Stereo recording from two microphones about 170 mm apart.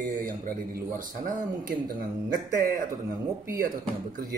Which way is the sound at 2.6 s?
60° right (ahead or behind).